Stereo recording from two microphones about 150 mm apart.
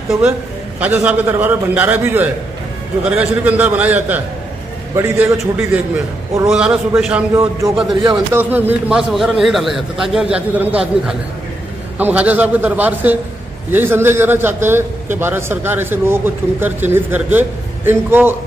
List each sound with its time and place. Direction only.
0.7 s a man's voice: 10° right (ahead or behind)
7.9 s speech: 30° right (ahead or behind)
8.3 s a man's voice: 15° right (ahead or behind)